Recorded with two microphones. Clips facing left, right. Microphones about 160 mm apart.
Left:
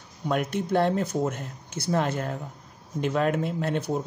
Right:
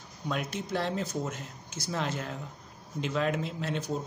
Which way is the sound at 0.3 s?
55° left (ahead or behind).